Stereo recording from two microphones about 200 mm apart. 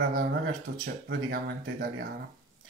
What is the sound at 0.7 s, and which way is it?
Speech, 55° right (ahead or behind).